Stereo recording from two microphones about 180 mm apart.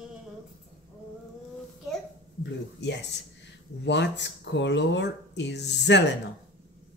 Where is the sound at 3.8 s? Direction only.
75° left (ahead or behind).